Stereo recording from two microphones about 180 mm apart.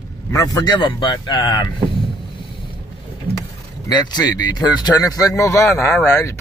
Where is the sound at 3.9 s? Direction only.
25° left (ahead or behind).